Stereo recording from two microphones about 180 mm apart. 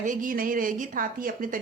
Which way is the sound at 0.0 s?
45° right (ahead or behind).